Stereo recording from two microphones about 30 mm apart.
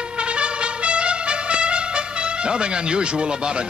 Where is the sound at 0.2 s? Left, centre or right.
Right.